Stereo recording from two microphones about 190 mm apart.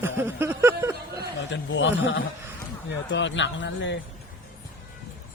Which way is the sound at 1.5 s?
75° left (ahead or behind).